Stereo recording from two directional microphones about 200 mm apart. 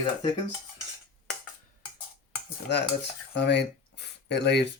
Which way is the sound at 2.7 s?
60° left (ahead or behind).